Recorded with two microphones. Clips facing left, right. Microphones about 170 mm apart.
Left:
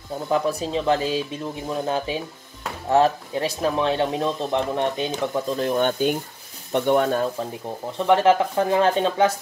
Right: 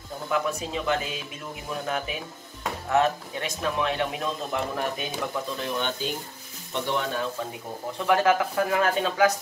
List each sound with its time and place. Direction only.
0.3 s speech: 35° left (ahead or behind)
5.3 s speech: 40° left (ahead or behind)
8.1 s speech: 25° left (ahead or behind)